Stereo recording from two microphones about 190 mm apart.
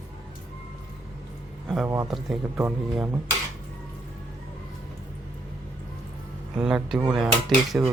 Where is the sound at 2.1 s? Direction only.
5° right (ahead or behind).